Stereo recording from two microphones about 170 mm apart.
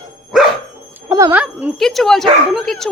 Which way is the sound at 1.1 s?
20° right (ahead or behind).